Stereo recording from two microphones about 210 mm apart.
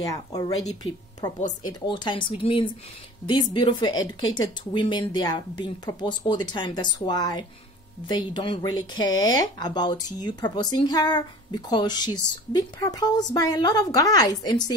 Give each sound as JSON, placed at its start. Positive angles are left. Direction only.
{"t": 0.0, "sound": "a woman's voice", "side_deg": 15}
{"t": 0.7, "sound": "speech", "side_deg": 30}